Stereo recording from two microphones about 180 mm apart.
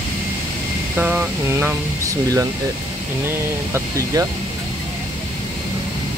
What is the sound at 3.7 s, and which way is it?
Speech, 15° right (ahead or behind).